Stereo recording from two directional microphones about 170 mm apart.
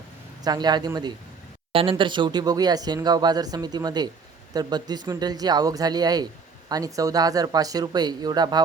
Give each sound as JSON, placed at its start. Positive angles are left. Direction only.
{"t": 0.4, "sound": "speech", "side_deg": -25}